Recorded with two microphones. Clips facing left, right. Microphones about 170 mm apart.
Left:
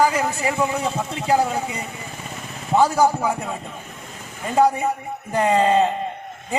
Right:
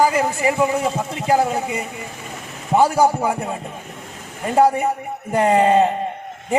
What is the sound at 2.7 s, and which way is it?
Speech, 15° right (ahead or behind).